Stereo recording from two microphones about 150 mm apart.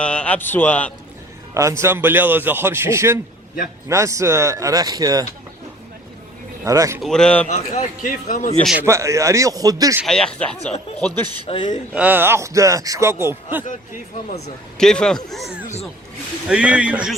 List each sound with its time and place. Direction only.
0.0 s a man's voice: 5° left (ahead or behind)
1.5 s a man's voice: 20° right (ahead or behind)
6.7 s speech: 20° right (ahead or behind)
7.0 s speech: 5° left (ahead or behind)
7.5 s a man's voice: 50° left (ahead or behind)
8.8 s speech: 20° right (ahead or behind)
10.1 s a man's voice: 5° left (ahead or behind)
11.4 s a man's voice: 35° left (ahead or behind)
11.9 s speech: 10° right (ahead or behind)
14.8 s a man's voice: 5° left (ahead or behind)